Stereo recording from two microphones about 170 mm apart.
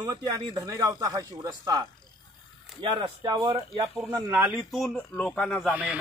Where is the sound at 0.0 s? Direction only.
25° right (ahead or behind).